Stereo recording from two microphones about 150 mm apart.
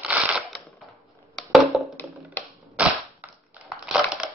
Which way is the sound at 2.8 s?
10° right (ahead or behind).